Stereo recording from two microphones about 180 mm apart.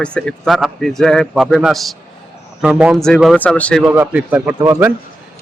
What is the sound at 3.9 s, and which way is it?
Speech, 10° right (ahead or behind).